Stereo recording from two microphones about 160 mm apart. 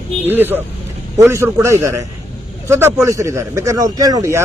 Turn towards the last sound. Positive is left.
turn(degrees=-20)  # may be behind; listen again after turning